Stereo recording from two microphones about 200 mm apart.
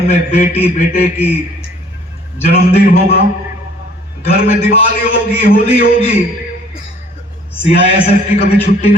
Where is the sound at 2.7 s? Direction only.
30° left (ahead or behind).